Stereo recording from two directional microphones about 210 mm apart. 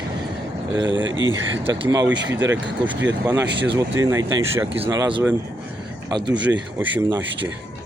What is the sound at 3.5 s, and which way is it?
Speech, 55° right (ahead or behind).